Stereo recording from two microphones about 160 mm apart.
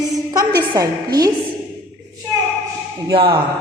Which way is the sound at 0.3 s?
25° right (ahead or behind).